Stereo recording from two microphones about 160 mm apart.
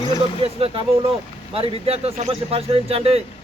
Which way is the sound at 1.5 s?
35° right (ahead or behind).